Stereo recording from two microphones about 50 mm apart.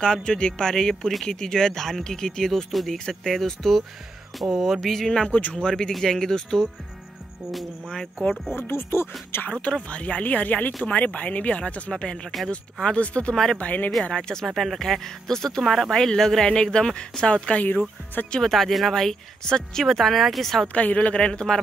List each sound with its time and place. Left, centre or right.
0.0 s speech: centre
5.3 s speech: left
5.6 s speech: centre
8.5 s speech: left
9.5 s speech: left
14.1 s speech: centre
14.4 s speech: centre; by 17.6 s left
17.6 s speech: left
18.5 s speech: centre
20.6 s speech: left